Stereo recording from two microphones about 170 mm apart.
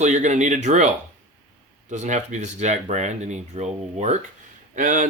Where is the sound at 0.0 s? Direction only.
45° right (ahead or behind).